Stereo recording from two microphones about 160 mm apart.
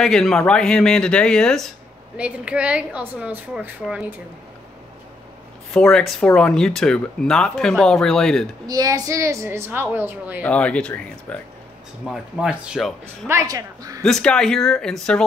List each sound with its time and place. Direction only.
0.0 s speech: 5° left (ahead or behind)
2.1 s speech: 10° right (ahead or behind)
5.7 s speech: 5° left (ahead or behind)
8.6 s speech: 25° right (ahead or behind)
10.4 s speech: 10° left (ahead or behind)
12.1 s speech: 5° right (ahead or behind)
13.3 s a woman's voice: 20° right (ahead or behind)
14.0 s speech: 5° left (ahead or behind)